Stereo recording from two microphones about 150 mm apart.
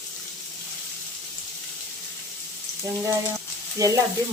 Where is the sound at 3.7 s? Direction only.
25° right (ahead or behind).